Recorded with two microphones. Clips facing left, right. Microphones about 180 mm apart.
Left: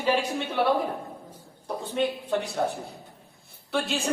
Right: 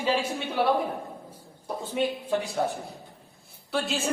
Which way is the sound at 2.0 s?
10° right (ahead or behind).